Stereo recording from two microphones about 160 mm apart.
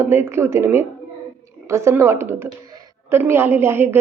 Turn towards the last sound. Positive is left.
turn(degrees=-15)  # may be behind; listen again after turning